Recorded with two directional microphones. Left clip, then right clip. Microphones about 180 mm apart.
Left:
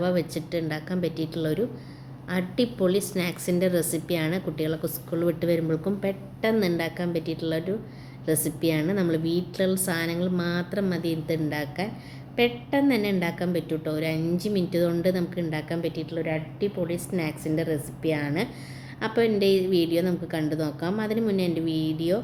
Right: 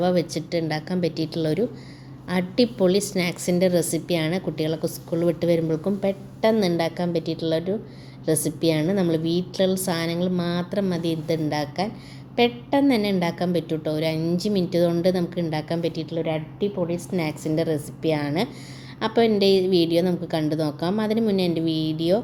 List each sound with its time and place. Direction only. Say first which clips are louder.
0.0 s a woman's voice: right 4 dB; 20° right (ahead or behind)